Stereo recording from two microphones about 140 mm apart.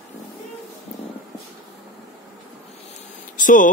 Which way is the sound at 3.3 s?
70° left (ahead or behind).